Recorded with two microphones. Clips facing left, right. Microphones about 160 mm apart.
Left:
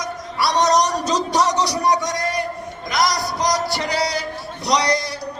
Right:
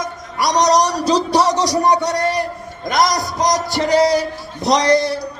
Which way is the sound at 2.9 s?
50° right (ahead or behind).